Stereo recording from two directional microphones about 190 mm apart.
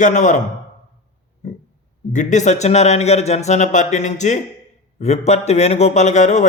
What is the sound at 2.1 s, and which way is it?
A man's voice, 40° left (ahead or behind).